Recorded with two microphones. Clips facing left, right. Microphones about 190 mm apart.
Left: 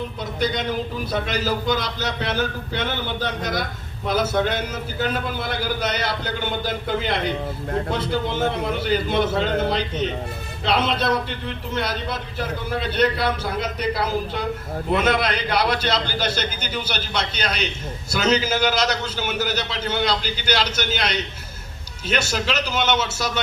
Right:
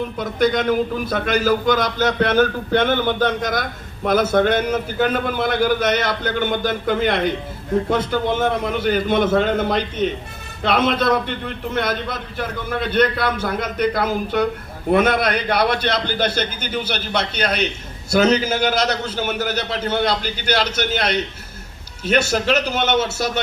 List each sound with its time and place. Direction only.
0.2 s a man's voice: 50° right (ahead or behind)